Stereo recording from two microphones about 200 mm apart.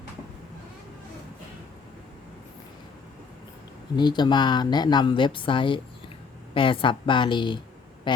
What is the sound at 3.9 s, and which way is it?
Speech, 20° left (ahead or behind).